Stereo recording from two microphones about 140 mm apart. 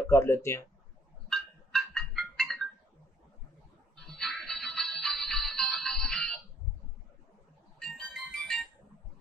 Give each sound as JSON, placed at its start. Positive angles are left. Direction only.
{"t": 0.1, "sound": "speech", "side_deg": 20}
{"t": 1.3, "sound": "a sound", "side_deg": 5}
{"t": 3.9, "sound": "music", "side_deg": 5}
{"t": 7.8, "sound": "music", "side_deg": 5}